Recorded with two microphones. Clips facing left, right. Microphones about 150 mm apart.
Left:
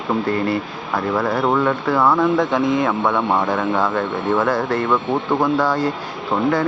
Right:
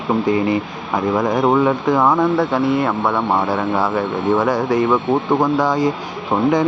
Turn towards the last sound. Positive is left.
turn(degrees=-20)  # may be behind; listen again after turning